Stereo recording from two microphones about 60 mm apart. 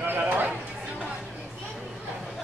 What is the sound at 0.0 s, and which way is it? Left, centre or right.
Chatter, right.